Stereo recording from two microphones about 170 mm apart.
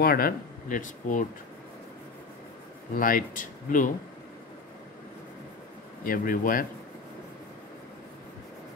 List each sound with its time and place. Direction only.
0.0 s speech: 60° left (ahead or behind)
2.9 s speech: 55° left (ahead or behind)
6.0 s speech: 55° left (ahead or behind)